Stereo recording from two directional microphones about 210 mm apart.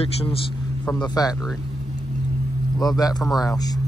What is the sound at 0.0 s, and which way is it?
A man's voice, 30° left (ahead or behind).